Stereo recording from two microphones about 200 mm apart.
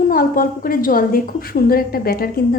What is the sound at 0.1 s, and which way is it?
A woman's voice, 45° left (ahead or behind).